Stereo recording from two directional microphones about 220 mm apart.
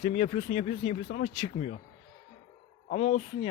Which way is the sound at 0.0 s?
30° left (ahead or behind).